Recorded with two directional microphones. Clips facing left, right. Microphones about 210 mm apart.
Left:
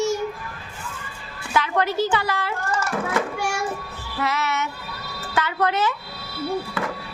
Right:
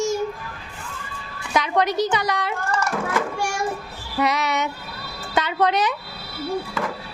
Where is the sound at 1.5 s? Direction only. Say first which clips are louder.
Right 1 dB; 20° right (ahead or behind).